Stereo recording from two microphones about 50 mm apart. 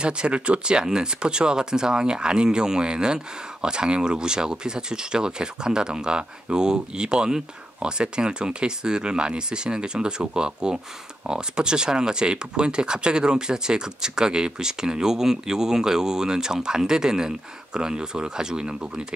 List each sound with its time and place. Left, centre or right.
0.0 s speech: centre